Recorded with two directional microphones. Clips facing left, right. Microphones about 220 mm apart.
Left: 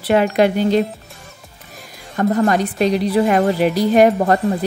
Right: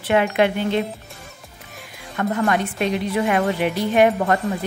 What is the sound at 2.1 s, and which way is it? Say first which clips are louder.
Speech: left 5 dB; 35° left (ahead or behind).